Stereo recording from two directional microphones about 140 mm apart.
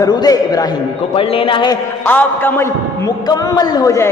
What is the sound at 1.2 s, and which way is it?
Speech, 40° left (ahead or behind).